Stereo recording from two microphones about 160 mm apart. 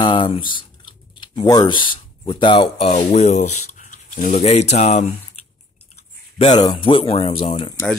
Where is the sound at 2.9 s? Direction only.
45° left (ahead or behind); by 4.4 s 60° left (ahead or behind).